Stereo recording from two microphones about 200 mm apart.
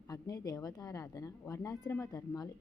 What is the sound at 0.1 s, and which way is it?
A woman's voice, 20° left (ahead or behind).